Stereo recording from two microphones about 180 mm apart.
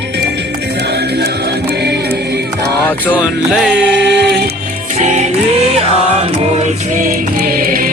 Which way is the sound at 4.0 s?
70° right (ahead or behind).